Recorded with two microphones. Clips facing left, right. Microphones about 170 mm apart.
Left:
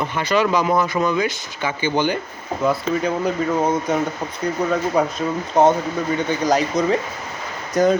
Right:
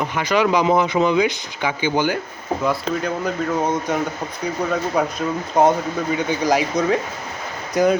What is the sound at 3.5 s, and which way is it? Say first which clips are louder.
Speech: even; 5° left (ahead or behind).